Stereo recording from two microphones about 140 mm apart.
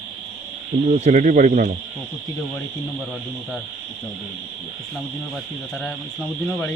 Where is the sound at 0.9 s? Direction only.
60° right (ahead or behind).